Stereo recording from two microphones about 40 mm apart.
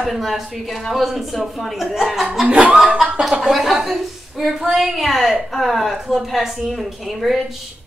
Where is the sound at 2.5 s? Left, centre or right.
Right.